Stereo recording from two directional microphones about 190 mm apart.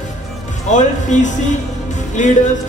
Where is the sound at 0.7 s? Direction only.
40° left (ahead or behind).